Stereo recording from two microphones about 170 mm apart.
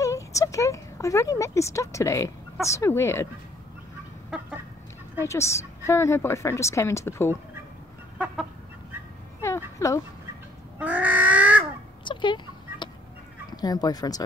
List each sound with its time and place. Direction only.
0.0 s a woman's voice: 20° left (ahead or behind)
4.3 s chicken: centre (ahead or behind)
5.2 s a woman's voice: 15° left (ahead or behind)
9.8 s a woman's voice: 15° left (ahead or behind)
10.8 s crow: 10° right (ahead or behind)
12.0 s a sound: 30° left (ahead or behind)
13.5 s speech: 25° left (ahead or behind)